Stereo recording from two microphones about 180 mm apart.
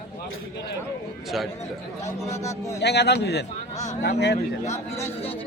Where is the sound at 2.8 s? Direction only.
70° left (ahead or behind).